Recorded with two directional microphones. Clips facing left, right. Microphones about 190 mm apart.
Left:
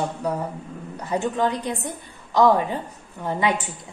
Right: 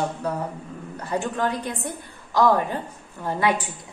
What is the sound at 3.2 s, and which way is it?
Speech, 20° left (ahead or behind).